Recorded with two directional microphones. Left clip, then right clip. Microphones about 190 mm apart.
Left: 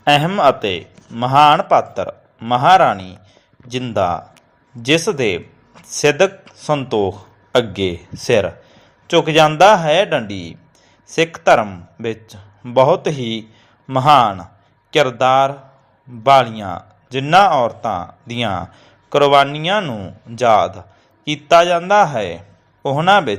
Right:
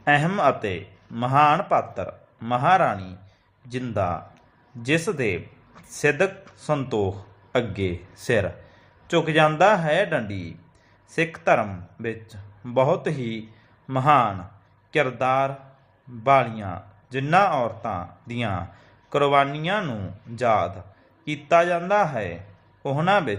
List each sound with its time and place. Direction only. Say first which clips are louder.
0.0 s a man's voice: left 7 dB; 20° left (ahead or behind)